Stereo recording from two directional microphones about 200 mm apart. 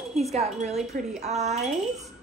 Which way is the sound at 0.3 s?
35° right (ahead or behind).